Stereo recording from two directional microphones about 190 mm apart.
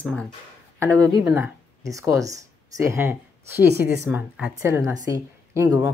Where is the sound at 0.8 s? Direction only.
15° right (ahead or behind).